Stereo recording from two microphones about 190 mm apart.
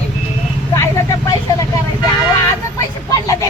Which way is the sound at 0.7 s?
15° left (ahead or behind).